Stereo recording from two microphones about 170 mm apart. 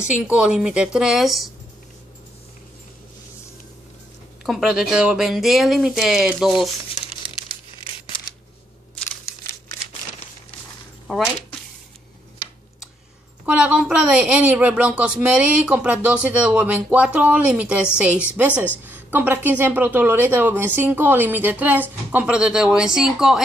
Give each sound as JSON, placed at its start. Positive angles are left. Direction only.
{"t": 0.3, "sound": "speech", "side_deg": -5}
{"t": 4.5, "sound": "speech", "side_deg": -5}
{"t": 7.4, "sound": "tearing", "side_deg": 30}
{"t": 11.1, "sound": "speech", "side_deg": 0}
{"t": 13.5, "sound": "speech", "side_deg": -5}